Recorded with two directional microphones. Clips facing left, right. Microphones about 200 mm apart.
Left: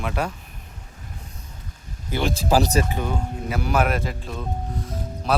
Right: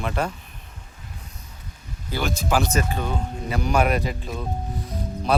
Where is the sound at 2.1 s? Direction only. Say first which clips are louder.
Left 3 dB; 30° left (ahead or behind).